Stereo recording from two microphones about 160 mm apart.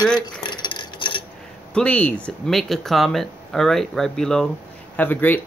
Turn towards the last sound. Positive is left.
turn(degrees=10)  # may be behind; listen again after turning